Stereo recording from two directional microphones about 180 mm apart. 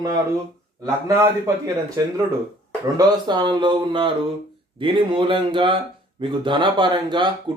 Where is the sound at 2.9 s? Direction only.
25° right (ahead or behind).